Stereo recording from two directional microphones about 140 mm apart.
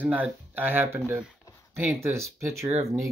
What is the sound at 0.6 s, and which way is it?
Speech, 15° right (ahead or behind).